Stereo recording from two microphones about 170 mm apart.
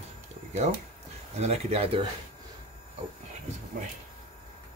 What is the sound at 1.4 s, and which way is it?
Speech, 40° right (ahead or behind).